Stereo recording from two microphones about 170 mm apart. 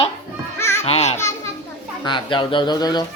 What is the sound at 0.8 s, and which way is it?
Speech, 35° left (ahead or behind).